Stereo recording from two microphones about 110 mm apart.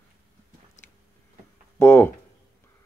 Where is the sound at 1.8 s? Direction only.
20° left (ahead or behind).